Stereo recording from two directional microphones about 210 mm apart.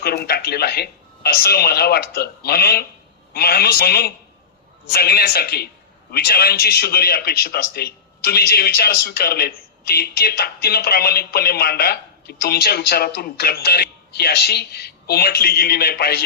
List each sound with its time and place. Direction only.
0.0 s a man's voice: 50° left (ahead or behind)